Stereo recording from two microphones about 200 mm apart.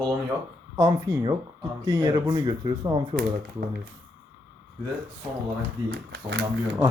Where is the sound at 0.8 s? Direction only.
25° right (ahead or behind).